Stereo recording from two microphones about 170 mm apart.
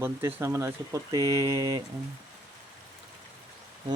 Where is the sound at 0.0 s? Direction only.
15° right (ahead or behind).